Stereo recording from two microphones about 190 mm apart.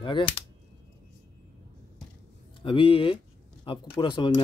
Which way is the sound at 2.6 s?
25° left (ahead or behind).